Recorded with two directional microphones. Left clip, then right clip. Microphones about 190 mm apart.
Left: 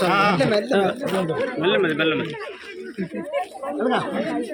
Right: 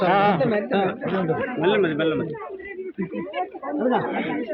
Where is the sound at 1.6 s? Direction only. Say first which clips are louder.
Even; centre (ahead or behind).